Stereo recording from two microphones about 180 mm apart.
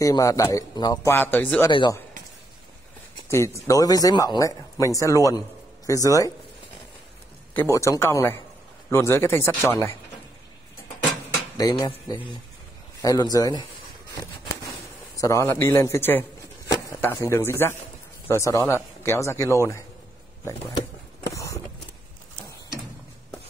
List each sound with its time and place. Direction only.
0.0 s a man's voice: 20° left (ahead or behind)
1.7 s speech: 25° left (ahead or behind)
3.3 s a man's voice: 15° left (ahead or behind)
7.5 s a man's voice: 15° left (ahead or behind)
11.8 s speech: 20° left (ahead or behind)
15.1 s a man's voice: 15° left (ahead or behind)
21.3 s a sound: 15° left (ahead or behind)